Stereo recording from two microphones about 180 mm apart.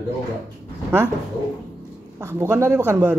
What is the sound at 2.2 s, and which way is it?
Speech, 15° right (ahead or behind).